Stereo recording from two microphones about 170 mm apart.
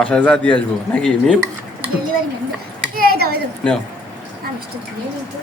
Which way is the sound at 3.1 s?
65° right (ahead or behind).